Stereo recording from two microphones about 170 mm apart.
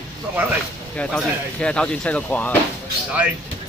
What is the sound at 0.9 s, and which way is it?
Speech, 5° left (ahead or behind).